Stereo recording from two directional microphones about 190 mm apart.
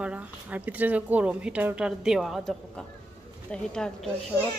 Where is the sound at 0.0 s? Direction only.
5° right (ahead or behind).